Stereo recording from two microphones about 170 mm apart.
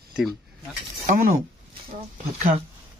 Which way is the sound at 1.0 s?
50° right (ahead or behind).